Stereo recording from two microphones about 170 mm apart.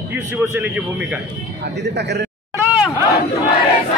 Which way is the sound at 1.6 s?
85° right.